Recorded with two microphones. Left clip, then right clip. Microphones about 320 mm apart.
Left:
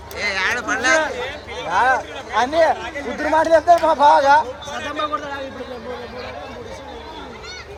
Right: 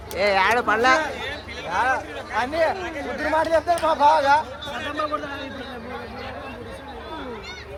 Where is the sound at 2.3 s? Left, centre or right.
Left.